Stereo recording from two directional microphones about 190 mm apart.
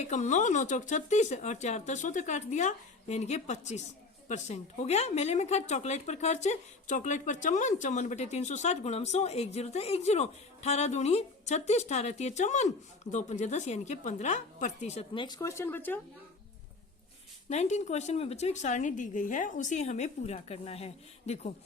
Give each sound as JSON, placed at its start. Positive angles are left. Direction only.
{"t": 0.0, "sound": "a woman's voice", "side_deg": 40}
{"t": 17.5, "sound": "a woman's voice", "side_deg": 35}